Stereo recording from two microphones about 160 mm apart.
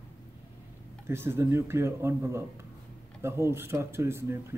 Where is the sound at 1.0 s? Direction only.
15° right (ahead or behind).